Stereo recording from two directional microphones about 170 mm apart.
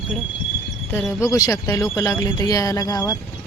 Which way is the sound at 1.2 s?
20° left (ahead or behind).